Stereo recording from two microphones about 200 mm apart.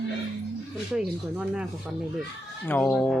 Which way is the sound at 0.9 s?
5° right (ahead or behind).